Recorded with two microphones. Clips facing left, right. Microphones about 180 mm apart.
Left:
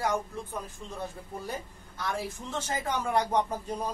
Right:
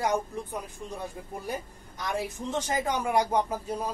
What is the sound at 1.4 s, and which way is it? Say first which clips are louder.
Speech: right 4 dB; 15° right (ahead or behind).